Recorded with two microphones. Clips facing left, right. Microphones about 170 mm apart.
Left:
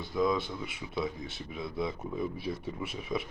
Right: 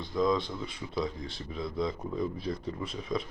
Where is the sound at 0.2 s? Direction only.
5° left (ahead or behind).